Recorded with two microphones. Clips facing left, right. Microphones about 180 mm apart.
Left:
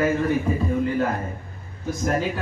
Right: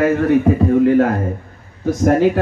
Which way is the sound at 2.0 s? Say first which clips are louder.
Right 11 dB; 60° right (ahead or behind).